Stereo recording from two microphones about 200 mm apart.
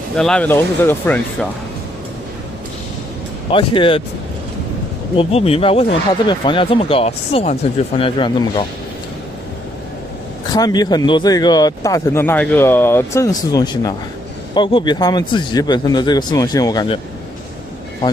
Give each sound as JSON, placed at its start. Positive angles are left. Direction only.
{"t": 0.1, "sound": "speech", "side_deg": 5}
{"t": 3.5, "sound": "speech", "side_deg": 25}
{"t": 5.1, "sound": "speech", "side_deg": 30}
{"t": 10.5, "sound": "speech", "side_deg": 20}